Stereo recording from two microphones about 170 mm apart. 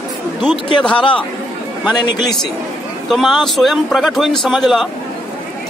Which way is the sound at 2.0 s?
25° left (ahead or behind).